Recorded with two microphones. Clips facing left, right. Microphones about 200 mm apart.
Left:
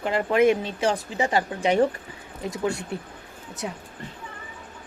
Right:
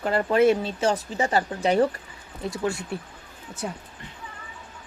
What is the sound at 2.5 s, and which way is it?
Speech, 20° left (ahead or behind).